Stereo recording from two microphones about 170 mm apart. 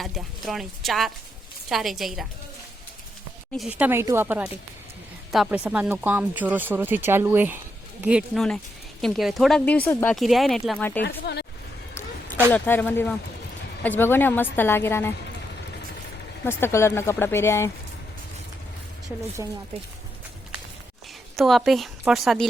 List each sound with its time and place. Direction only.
0.0 s speech: centre (ahead or behind)
3.7 s a woman's voice: 10° right (ahead or behind); by 10.2 s 10° left (ahead or behind)
10.2 s speech: centre (ahead or behind)
11.3 s speech: 80° left
12.5 s a woman's voice: 10° left (ahead or behind)
16.5 s a woman's voice: 15° left (ahead or behind)
19.4 s a woman's voice: 20° right (ahead or behind)
21.3 s speech: centre (ahead or behind)